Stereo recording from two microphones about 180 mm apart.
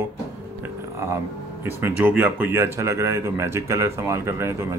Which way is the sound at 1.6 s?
15° right (ahead or behind).